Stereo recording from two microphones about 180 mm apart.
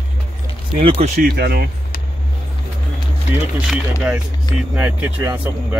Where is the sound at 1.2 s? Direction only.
60° right (ahead or behind).